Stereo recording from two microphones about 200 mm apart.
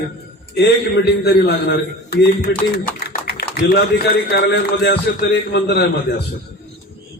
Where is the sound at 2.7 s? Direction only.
50° left (ahead or behind).